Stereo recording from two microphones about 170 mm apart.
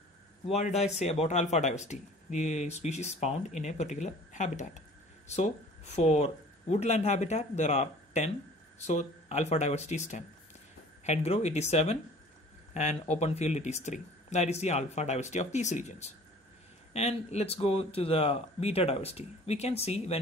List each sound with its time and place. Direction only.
0.5 s speech: 40° left (ahead or behind)
13.1 s speech: 40° left (ahead or behind)